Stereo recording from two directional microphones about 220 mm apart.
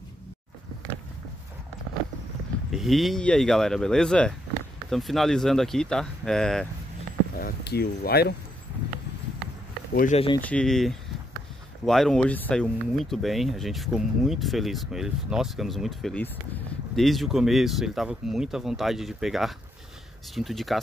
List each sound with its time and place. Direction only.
2.7 s speech: centre (ahead or behind)
7.3 s speech: 45° left (ahead or behind)
9.9 s speech: 30° left (ahead or behind)
10.4 s speech: 5° left (ahead or behind)